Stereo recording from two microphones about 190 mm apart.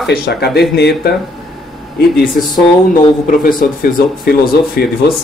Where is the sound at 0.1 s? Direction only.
55° left (ahead or behind).